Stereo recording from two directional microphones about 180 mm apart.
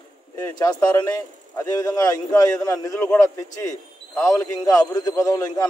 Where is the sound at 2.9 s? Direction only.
5° left (ahead or behind).